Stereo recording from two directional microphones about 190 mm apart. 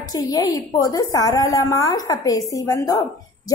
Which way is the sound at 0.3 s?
20° left (ahead or behind).